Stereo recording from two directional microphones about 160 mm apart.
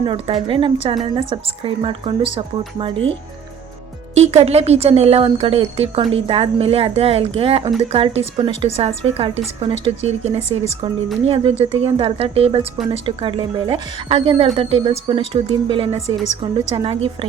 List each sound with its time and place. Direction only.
0.0 s a woman's voice: 35° right (ahead or behind)
4.1 s a woman's voice: 40° right (ahead or behind)
11.6 s a woman's voice: 40° right (ahead or behind)